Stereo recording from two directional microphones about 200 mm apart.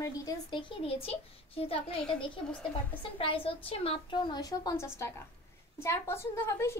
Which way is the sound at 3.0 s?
25° left (ahead or behind).